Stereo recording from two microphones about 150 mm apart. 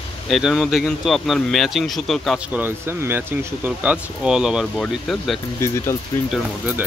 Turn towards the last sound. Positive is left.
turn(degrees=0)  # may be behind; listen again after turning